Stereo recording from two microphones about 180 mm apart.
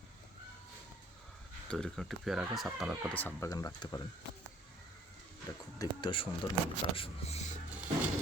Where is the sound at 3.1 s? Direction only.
10° left (ahead or behind).